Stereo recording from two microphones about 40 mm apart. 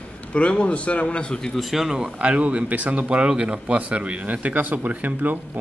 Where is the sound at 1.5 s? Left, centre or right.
Centre.